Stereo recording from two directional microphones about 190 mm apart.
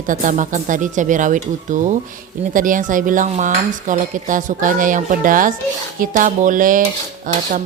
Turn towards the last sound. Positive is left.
turn(degrees=-45)  # may be behind; listen again after turning